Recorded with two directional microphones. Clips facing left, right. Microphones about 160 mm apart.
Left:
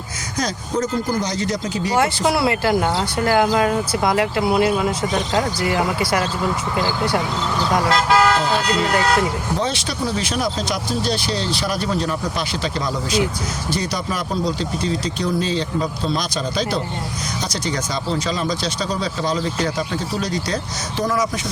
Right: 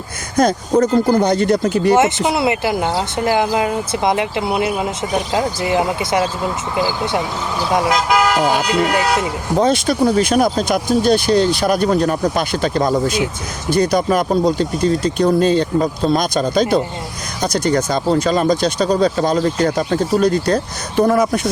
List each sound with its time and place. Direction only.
0.3 s speech: 55° right (ahead or behind)
2.0 s speech: 20° right (ahead or behind)
9.6 s speech: 50° right (ahead or behind)